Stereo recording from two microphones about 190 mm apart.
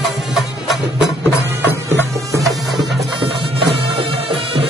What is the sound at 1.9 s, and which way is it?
Music, 15° right (ahead or behind).